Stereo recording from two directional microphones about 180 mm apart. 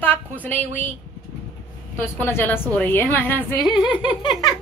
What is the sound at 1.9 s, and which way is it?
Speech, 10° left (ahead or behind).